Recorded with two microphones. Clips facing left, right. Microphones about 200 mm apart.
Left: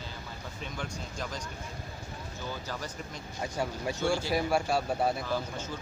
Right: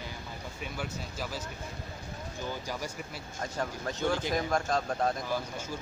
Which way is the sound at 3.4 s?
10° left (ahead or behind).